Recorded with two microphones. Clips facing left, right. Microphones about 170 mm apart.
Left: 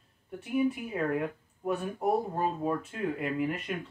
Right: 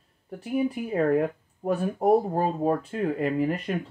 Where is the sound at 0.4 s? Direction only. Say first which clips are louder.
Right 2 dB; 35° right (ahead or behind).